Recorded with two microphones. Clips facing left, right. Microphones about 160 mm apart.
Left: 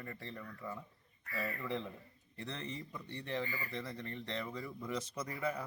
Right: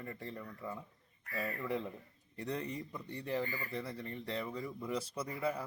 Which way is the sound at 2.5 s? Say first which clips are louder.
Right 5 dB; 15° right (ahead or behind).